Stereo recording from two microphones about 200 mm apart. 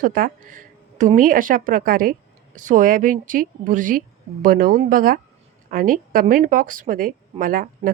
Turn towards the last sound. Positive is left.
turn(degrees=-45)  # may be behind; listen again after turning